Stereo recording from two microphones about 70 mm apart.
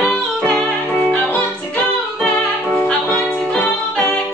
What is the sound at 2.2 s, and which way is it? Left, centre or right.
Music, centre.